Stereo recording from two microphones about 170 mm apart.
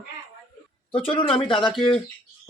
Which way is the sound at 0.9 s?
30° left (ahead or behind).